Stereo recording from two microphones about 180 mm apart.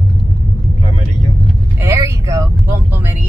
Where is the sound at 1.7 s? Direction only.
15° right (ahead or behind).